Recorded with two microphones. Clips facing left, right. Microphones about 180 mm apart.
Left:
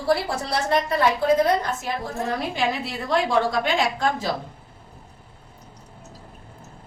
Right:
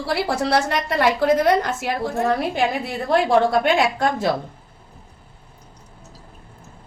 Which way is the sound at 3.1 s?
60° right (ahead or behind).